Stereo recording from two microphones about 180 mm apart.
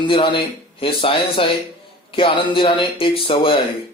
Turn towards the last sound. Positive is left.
turn(degrees=30)  # may be behind; listen again after turning